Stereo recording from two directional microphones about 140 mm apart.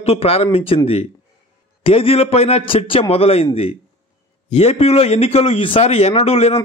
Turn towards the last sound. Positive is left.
turn(degrees=45)  # may be behind; listen again after turning